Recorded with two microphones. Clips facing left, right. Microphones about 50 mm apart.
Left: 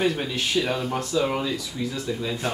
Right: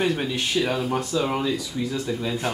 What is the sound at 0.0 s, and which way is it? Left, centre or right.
Speech, centre.